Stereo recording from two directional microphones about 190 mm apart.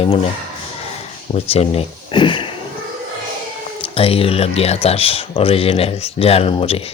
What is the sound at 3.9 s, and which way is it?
Speech, 30° left (ahead or behind).